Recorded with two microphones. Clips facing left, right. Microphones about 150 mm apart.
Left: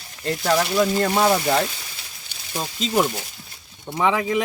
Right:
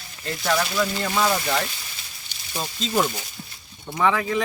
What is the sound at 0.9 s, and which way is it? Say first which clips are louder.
Speech: left 6 dB; 45° left (ahead or behind).